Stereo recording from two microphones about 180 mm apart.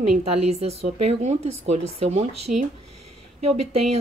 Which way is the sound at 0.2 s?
35° right (ahead or behind).